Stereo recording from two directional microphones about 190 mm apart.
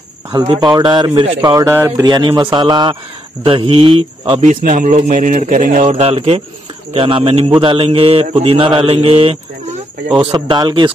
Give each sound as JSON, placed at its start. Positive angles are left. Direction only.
{"t": 0.5, "sound": "speech", "side_deg": -20}
{"t": 1.4, "sound": "speech", "side_deg": -20}